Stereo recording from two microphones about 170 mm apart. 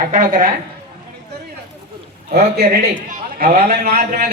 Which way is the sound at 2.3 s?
65° right (ahead or behind).